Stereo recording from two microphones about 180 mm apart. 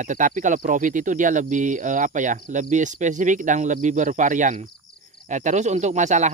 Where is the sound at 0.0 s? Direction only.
45° right (ahead or behind).